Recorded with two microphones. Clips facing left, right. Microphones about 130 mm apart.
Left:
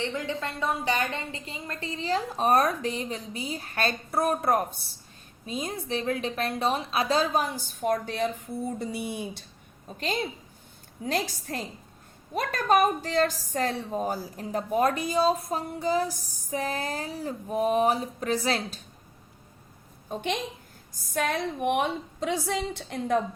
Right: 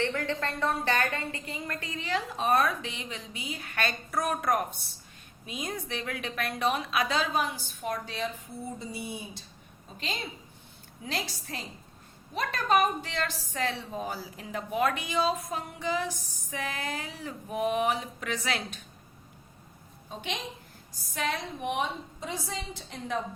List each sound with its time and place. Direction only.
0.0 s a woman's voice: 15° left (ahead or behind); by 9.4 s 65° left (ahead or behind)
11.0 s a woman's voice: 45° left (ahead or behind)
20.1 s a woman's voice: 50° left (ahead or behind)